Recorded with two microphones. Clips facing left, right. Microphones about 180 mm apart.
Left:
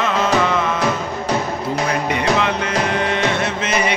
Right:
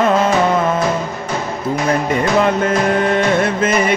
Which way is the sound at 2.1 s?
45° right (ahead or behind).